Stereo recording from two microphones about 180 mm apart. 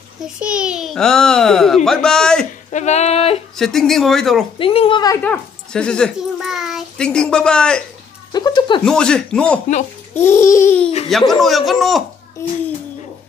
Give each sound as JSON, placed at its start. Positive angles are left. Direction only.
{"t": 0.2, "sound": "a child's voice", "side_deg": -5}
{"t": 2.7, "sound": "a sound", "side_deg": 40}
{"t": 3.5, "sound": "a child's voice", "side_deg": 0}
{"t": 4.6, "sound": "a woman's voice", "side_deg": 30}
{"t": 5.2, "sound": "a child's voice", "side_deg": 5}
{"t": 8.3, "sound": "speech", "side_deg": 20}
{"t": 8.8, "sound": "a child's voice", "side_deg": 5}
{"t": 10.1, "sound": "babbling", "side_deg": 15}
{"t": 11.1, "sound": "a child's voice", "side_deg": 0}